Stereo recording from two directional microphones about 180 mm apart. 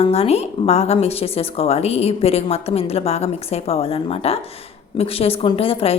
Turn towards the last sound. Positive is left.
turn(degrees=30)  # may be behind; listen again after turning